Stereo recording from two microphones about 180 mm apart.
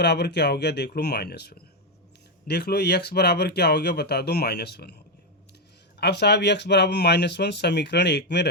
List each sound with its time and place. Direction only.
0.0 s speech: 70° left (ahead or behind)
6.0 s speech: 70° left (ahead or behind)